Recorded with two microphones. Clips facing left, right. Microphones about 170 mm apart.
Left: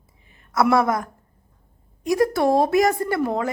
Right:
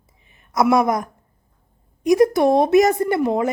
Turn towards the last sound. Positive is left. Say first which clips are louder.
# right 4 dB
turn(degrees=-20)  # may be behind; listen again after turning